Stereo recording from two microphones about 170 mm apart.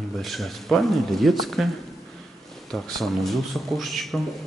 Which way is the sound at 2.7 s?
Centre (ahead or behind).